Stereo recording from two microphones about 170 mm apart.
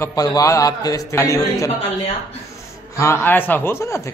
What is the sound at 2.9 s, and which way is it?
A man's voice, 15° left (ahead or behind).